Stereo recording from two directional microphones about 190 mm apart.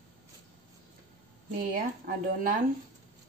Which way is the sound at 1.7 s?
50° right (ahead or behind).